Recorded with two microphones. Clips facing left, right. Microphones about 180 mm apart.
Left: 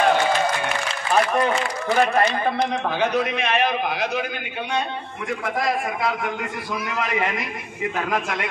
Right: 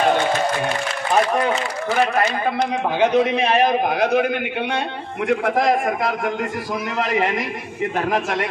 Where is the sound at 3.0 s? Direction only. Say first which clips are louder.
Right 7 dB; 25° right (ahead or behind); by 4.3 s 55° right (ahead or behind).